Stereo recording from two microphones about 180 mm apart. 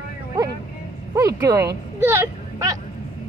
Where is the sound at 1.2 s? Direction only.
20° right (ahead or behind).